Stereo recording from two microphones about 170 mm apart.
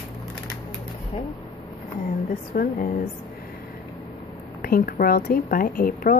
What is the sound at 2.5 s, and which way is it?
Speech, 55° left (ahead or behind).